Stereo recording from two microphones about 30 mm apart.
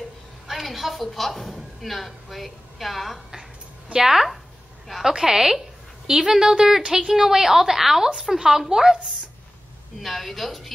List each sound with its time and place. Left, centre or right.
0.5 s a woman's voice: centre
3.9 s a woman's voice: centre
9.9 s a woman's voice: centre